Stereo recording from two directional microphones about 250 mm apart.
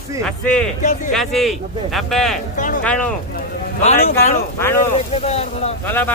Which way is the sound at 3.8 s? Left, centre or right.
Left.